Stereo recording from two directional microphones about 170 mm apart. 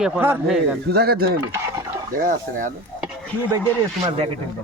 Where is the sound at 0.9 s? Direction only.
65° right (ahead or behind).